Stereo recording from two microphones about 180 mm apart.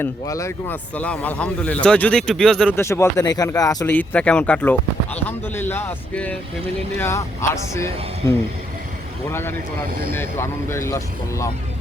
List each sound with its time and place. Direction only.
0.0 s a man's voice: 15° left (ahead or behind)
2.7 s speech: 15° left (ahead or behind)
3.9 s a man's voice: 10° left (ahead or behind)